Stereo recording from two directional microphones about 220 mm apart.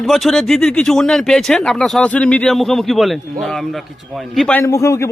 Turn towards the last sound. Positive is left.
turn(degrees=15)  # may be behind; listen again after turning